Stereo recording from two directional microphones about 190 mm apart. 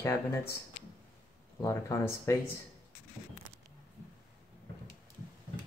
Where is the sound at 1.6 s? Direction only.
15° left (ahead or behind).